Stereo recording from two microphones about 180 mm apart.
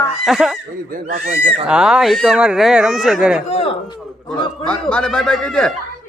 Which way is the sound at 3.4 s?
35° left (ahead or behind).